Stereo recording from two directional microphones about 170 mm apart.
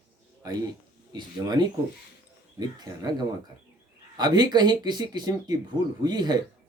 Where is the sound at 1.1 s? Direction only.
25° right (ahead or behind).